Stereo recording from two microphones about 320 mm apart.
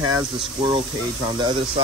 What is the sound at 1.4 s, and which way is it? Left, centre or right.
Speech, centre.